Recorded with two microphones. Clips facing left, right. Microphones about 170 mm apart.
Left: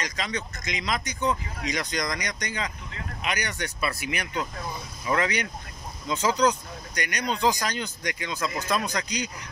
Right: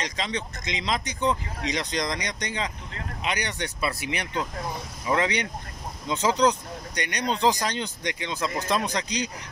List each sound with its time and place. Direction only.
0.0 s speech: 25° right (ahead or behind)